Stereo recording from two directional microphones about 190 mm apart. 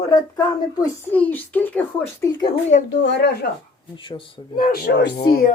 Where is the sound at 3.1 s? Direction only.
60° left (ahead or behind).